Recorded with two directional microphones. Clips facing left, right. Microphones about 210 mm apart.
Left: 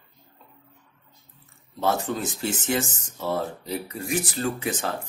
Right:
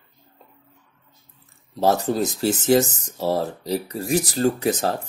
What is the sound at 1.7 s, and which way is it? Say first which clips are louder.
Speech: right 6 dB; 35° right (ahead or behind).